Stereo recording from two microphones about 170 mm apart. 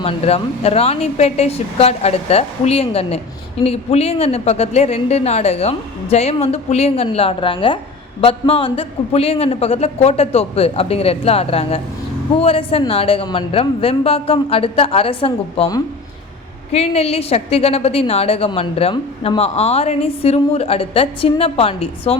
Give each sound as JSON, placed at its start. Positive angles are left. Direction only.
{"t": 0.0, "sound": "a woman's voice", "side_deg": 35}
{"t": 16.7, "sound": "a woman's voice", "side_deg": 35}